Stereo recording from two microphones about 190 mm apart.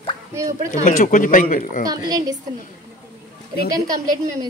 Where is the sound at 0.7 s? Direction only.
40° left (ahead or behind).